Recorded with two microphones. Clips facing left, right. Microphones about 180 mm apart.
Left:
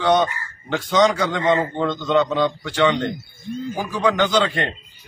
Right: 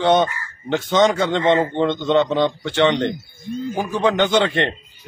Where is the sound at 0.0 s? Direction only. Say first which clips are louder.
Right 2 dB; 25° right (ahead or behind).